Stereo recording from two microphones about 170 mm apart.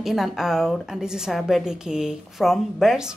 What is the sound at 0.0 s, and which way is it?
A woman's voice, centre (ahead or behind).